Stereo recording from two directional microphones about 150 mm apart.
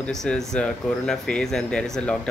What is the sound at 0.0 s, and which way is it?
Speech, 5° left (ahead or behind).